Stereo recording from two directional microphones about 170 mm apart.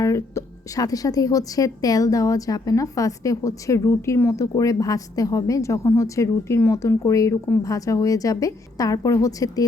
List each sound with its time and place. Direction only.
0.0 s a woman's voice: 20° left (ahead or behind)